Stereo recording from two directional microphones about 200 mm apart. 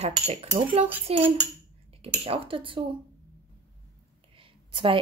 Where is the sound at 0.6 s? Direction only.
25° right (ahead or behind).